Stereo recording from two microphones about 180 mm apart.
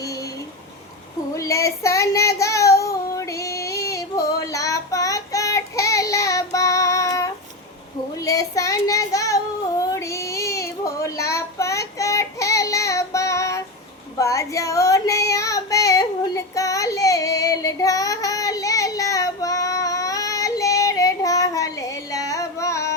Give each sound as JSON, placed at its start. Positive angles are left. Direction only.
{"t": 0.0, "sound": "a sound", "side_deg": 20}
{"t": 1.4, "sound": "child singing", "side_deg": 15}
{"t": 14.2, "sound": "female singing", "side_deg": 15}